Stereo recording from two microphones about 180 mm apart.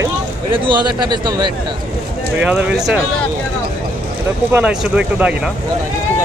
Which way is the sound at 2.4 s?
5° right (ahead or behind).